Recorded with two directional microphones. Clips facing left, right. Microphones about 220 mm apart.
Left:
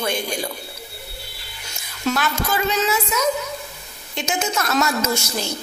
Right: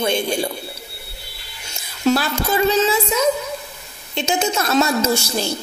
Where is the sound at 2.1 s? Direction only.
30° right (ahead or behind).